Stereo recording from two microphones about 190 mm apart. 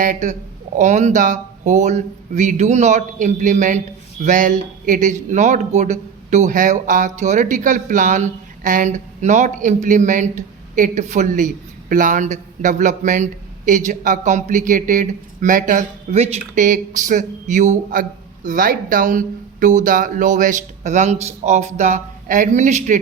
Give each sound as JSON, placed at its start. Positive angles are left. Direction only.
{"t": 0.0, "sound": "speech", "side_deg": -40}